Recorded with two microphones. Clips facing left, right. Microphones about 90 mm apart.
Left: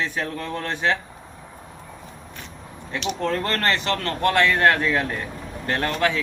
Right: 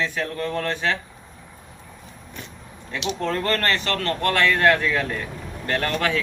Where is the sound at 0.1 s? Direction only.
20° left (ahead or behind).